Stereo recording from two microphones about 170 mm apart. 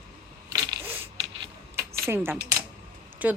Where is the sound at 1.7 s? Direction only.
15° right (ahead or behind).